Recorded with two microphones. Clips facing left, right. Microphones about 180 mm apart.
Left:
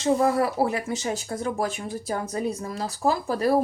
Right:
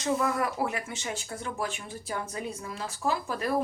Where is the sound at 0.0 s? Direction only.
35° left (ahead or behind).